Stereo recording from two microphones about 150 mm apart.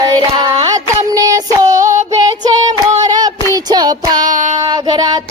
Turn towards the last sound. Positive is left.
turn(degrees=-25)  # may be behind; listen again after turning